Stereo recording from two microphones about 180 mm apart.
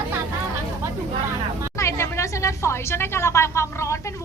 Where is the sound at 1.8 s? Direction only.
15° left (ahead or behind).